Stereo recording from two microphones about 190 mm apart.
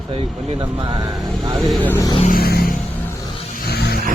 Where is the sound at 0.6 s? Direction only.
25° right (ahead or behind).